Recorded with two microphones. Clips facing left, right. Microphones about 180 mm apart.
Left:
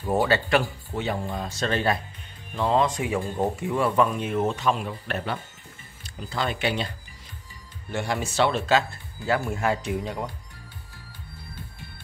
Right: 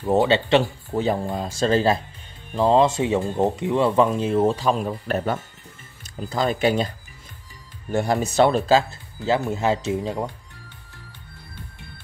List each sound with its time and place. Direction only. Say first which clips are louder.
0.0 s speech: right 4 dB; 20° right (ahead or behind)
0.9 s speech: right 6 dB; 35° right (ahead or behind)
7.9 s speech: right 6 dB; 40° right (ahead or behind)